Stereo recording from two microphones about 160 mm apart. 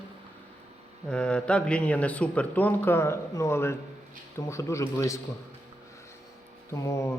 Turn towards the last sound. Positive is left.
turn(degrees=15)  # may be behind; listen again after turning